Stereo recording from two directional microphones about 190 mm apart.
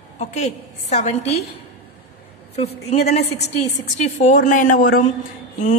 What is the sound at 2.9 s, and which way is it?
A woman's voice, 35° left (ahead or behind).